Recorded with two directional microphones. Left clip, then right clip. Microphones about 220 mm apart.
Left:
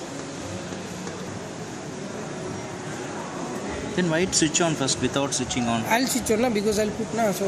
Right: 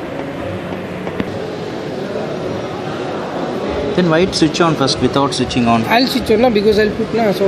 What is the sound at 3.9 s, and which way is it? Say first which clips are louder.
Speech: right 9 dB; 25° left (ahead or behind).